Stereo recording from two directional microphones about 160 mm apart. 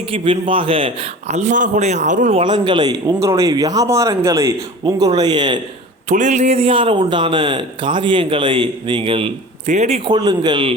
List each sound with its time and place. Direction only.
0.1 s a man's voice: 35° right (ahead or behind); by 2.4 s 50° right (ahead or behind)
2.4 s speech: 30° right (ahead or behind)
6.1 s a man's voice: 45° right (ahead or behind)
10.1 s speech: 25° right (ahead or behind)